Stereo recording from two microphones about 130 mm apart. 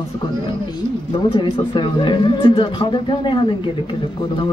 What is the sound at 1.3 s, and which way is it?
Speech, 40° left (ahead or behind).